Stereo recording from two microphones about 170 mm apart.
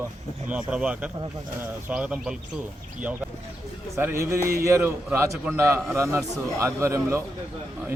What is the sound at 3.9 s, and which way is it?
A man's voice, 15° right (ahead or behind).